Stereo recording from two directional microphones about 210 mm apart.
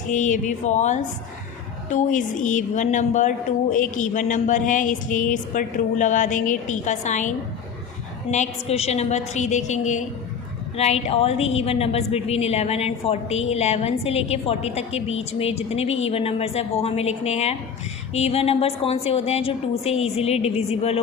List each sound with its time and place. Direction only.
0.1 s a woman's voice: 35° left (ahead or behind)